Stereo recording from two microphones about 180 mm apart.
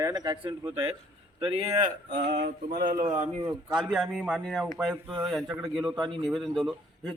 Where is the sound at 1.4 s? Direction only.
35° right (ahead or behind).